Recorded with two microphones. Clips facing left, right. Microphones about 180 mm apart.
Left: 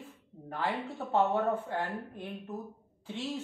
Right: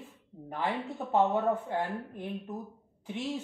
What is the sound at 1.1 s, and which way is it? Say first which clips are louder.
Speech: right 1 dB; 15° right (ahead or behind).